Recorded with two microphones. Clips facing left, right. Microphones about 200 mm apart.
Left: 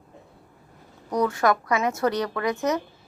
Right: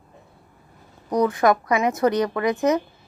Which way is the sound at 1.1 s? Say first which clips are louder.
Right 3 dB; 20° right (ahead or behind).